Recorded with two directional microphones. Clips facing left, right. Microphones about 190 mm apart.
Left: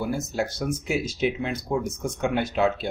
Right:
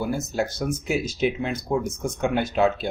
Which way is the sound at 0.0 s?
45° right (ahead or behind).